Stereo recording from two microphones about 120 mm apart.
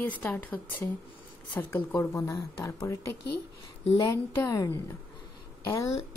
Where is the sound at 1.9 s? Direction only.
25° left (ahead or behind).